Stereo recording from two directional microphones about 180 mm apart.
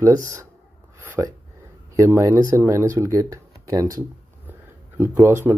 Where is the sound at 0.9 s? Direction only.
15° right (ahead or behind).